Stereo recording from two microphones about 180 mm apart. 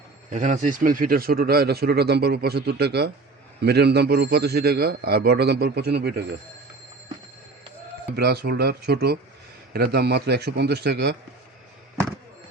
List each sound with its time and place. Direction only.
0.3 s speech: 45° right (ahead or behind); by 6.2 s 65° right (ahead or behind)
8.1 s speech: 65° right (ahead or behind)